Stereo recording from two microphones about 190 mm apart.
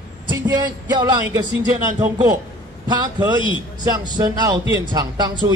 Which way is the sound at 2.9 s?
20° right (ahead or behind).